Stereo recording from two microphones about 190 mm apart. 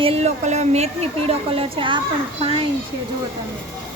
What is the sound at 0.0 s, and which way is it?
Speech, 30° right (ahead or behind).